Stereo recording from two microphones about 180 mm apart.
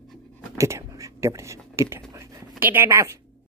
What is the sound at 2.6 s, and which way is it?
Speech, 10° right (ahead or behind).